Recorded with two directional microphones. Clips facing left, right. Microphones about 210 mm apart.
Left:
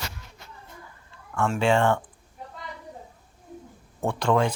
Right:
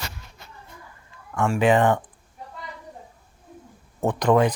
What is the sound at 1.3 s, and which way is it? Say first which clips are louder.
Speech: right 3 dB; 15° right (ahead or behind).